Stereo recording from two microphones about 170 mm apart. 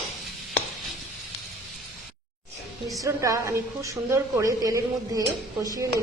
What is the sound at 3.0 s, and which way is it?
A woman's voice, 20° right (ahead or behind).